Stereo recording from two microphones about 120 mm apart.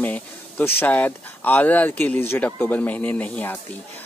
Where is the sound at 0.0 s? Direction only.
15° left (ahead or behind).